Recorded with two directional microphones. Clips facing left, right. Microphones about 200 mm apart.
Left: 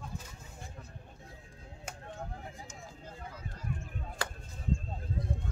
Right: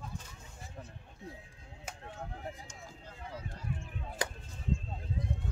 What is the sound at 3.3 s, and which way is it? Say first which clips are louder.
Run: right 2 dB; 45° left (ahead or behind).